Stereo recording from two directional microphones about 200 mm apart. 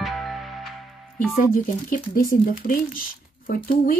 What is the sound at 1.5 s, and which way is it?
Speech, 45° left (ahead or behind).